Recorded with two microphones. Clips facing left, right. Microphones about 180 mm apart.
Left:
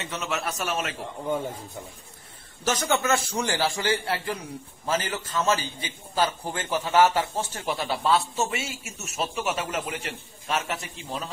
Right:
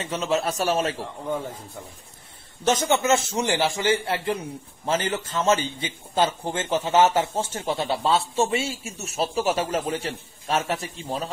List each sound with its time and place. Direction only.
0.0 s a man's voice: 30° right (ahead or behind)
2.6 s a man's voice: 25° right (ahead or behind)